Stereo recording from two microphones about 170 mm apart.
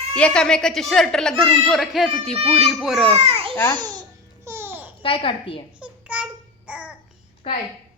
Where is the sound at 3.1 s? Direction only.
35° right (ahead or behind).